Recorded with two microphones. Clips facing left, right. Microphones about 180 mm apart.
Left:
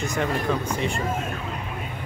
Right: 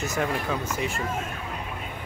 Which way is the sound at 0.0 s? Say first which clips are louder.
Left 2 dB; 5° right (ahead or behind).